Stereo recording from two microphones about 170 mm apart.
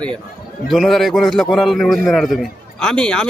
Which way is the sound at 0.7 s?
Centre (ahead or behind).